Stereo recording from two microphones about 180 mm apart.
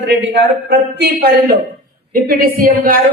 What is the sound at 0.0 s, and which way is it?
A man's voice, 80° right.